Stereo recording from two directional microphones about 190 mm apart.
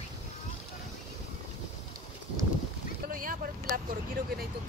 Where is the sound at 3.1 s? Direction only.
45° right (ahead or behind).